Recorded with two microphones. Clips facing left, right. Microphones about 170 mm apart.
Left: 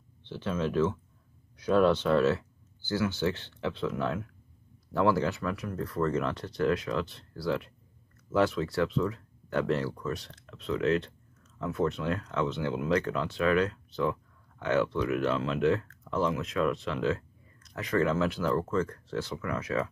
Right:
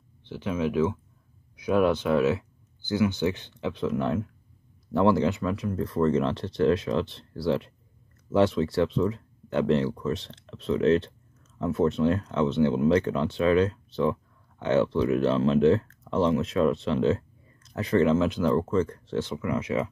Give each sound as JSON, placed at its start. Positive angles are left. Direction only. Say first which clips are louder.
{"t": 0.3, "sound": "speech", "louder": "right 3 dB", "side_deg": -10}